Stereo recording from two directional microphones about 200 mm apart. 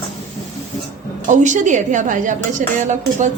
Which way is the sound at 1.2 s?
40° right (ahead or behind).